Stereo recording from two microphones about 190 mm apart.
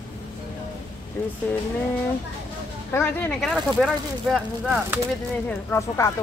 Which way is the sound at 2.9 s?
10° left (ahead or behind).